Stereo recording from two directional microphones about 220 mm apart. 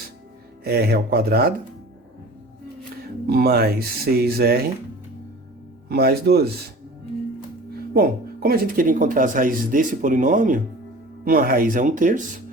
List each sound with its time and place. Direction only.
0.6 s speech: 45° right (ahead or behind)
3.2 s speech: 45° right (ahead or behind)
5.9 s speech: 45° right (ahead or behind)
7.9 s speech: 45° right (ahead or behind)